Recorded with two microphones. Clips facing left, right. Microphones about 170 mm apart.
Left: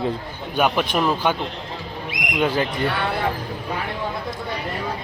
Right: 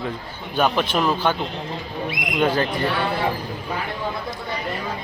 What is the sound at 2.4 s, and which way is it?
Speech, 10° left (ahead or behind).